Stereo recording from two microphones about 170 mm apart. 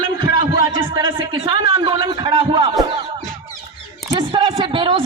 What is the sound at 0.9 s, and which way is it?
A man's voice, 25° right (ahead or behind).